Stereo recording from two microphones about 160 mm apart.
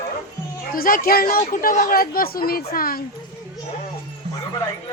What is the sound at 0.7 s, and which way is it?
Speech, 60° left (ahead or behind).